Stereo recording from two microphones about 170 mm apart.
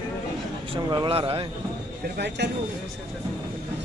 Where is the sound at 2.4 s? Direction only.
80° right.